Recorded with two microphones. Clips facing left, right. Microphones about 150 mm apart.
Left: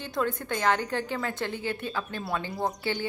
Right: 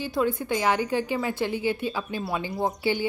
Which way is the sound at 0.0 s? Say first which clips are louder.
Right 4 dB; 5° right (ahead or behind).